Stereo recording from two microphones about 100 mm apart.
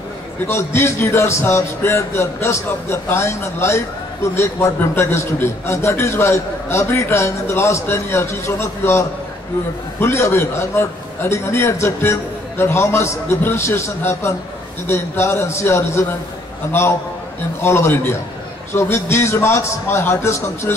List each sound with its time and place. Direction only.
0.5 s a man's voice: 25° left (ahead or behind)